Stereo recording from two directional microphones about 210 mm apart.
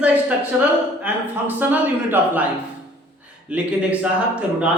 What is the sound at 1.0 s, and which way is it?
A man's voice, 10° right (ahead or behind).